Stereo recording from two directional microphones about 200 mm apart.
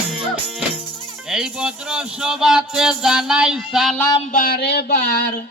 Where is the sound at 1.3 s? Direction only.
5° right (ahead or behind).